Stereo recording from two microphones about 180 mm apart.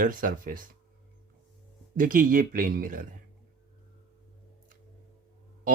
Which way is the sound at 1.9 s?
50° right (ahead or behind).